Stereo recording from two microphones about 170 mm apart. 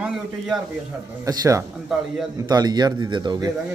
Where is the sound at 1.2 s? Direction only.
20° right (ahead or behind).